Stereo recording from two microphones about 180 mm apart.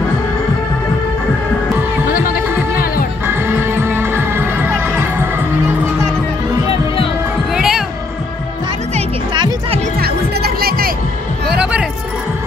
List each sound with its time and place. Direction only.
2.1 s music: 50° left (ahead or behind)
3.3 s music: 15° right (ahead or behind)
7.5 s music: centre (ahead or behind)
9.3 s music: 25° right (ahead or behind)
9.9 s music: 60° right (ahead or behind)
11.5 s music: 5° right (ahead or behind)